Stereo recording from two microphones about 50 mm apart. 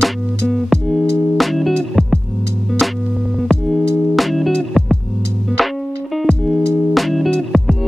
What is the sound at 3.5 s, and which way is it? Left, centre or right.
Music, centre.